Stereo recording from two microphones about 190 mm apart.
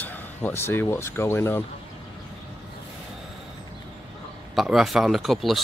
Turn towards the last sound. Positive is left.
turn(degrees=0)  # may be behind; listen again after turning